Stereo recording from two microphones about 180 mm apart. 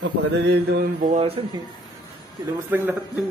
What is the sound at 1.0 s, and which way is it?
Speech, 40° right (ahead or behind).